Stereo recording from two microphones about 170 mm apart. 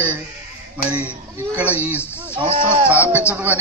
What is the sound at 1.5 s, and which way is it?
Speech, 10° right (ahead or behind).